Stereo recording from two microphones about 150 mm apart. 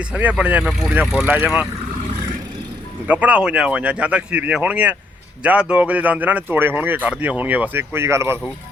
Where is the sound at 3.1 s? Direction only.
10° right (ahead or behind).